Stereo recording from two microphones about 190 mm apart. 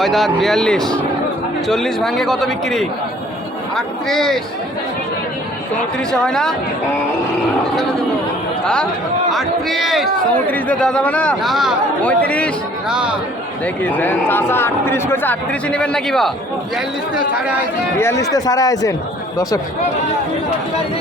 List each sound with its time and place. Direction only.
0.0 s a man's voice: centre (ahead or behind)
6.1 s a man's voice: 5° left (ahead or behind)
8.6 s a man's voice: 5° left (ahead or behind)
13.8 s speech: 10° left (ahead or behind)
17.9 s speech: 15° left (ahead or behind)